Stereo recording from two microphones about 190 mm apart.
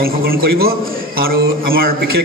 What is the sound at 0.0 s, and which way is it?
A man's voice, 50° right (ahead or behind).